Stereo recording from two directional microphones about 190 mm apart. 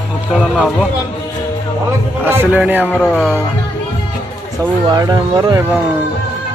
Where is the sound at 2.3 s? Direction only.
10° right (ahead or behind).